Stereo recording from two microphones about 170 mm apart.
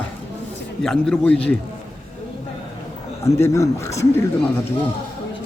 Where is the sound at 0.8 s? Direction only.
5° left (ahead or behind).